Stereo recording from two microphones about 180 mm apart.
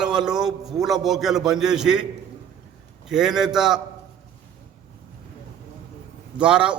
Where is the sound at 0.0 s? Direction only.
5° right (ahead or behind).